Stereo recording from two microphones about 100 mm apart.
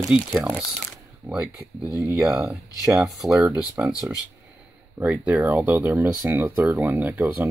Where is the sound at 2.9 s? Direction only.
5° right (ahead or behind).